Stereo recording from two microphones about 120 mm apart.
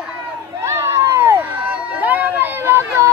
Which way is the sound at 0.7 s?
25° right (ahead or behind).